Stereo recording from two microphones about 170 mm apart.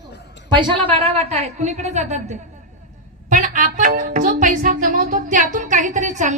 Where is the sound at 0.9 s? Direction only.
35° right (ahead or behind).